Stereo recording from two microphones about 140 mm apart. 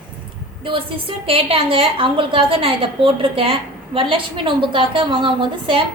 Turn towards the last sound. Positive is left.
turn(degrees=-40)  # may be behind; listen again after turning